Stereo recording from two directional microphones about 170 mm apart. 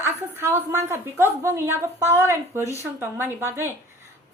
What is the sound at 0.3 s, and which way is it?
A woman's voice, 15° right (ahead or behind).